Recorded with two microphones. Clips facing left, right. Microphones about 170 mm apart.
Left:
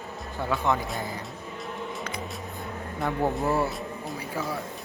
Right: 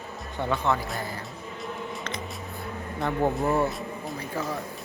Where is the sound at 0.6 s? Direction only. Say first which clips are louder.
Left 1 dB; 15° left (ahead or behind).